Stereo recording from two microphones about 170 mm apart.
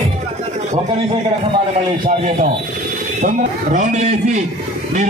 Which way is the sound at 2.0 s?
50° right (ahead or behind).